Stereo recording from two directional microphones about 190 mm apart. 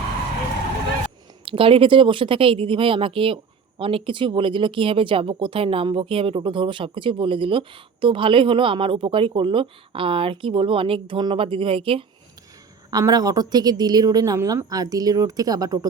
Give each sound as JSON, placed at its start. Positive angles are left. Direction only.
{"t": 1.5, "sound": "speech", "side_deg": -30}